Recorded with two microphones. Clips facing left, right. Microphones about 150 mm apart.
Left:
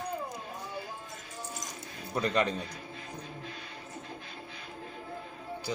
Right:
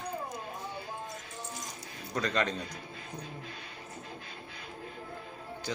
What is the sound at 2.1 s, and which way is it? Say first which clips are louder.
Speech: left 2 dB; 10° left (ahead or behind).